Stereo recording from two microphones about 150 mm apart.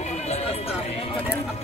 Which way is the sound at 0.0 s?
50° left (ahead or behind).